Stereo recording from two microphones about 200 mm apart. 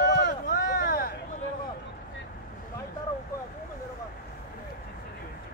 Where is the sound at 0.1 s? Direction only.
55° left (ahead or behind).